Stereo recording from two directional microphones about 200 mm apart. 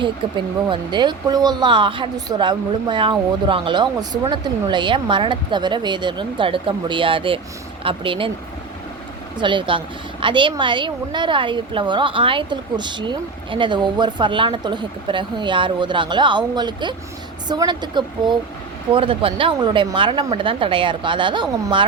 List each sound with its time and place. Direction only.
0.0 s speech: 25° right (ahead or behind)
9.4 s speech: 25° right (ahead or behind)